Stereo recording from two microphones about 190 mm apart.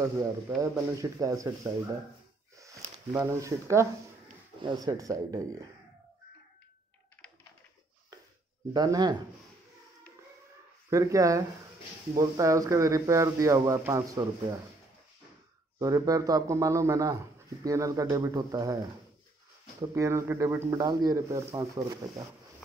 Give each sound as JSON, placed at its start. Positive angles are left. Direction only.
{"t": 0.6, "sound": "speech", "side_deg": -15}
{"t": 2.5, "sound": "a sound", "side_deg": -15}
{"t": 3.1, "sound": "speech", "side_deg": -15}
{"t": 8.7, "sound": "speech", "side_deg": -20}
{"t": 10.9, "sound": "speech", "side_deg": -15}
{"t": 15.8, "sound": "speech", "side_deg": -20}
{"t": 19.8, "sound": "speech", "side_deg": -15}